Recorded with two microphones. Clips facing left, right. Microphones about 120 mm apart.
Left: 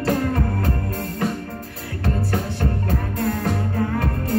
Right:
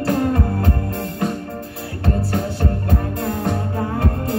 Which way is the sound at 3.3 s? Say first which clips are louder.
Right 2 dB; 30° right (ahead or behind).